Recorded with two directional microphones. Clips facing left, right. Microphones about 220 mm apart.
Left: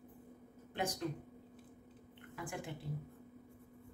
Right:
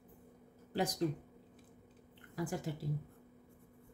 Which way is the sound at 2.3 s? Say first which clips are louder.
Right 5 dB; 40° right (ahead or behind).